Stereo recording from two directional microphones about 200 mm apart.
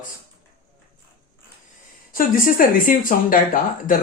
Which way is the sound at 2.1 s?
45° left (ahead or behind).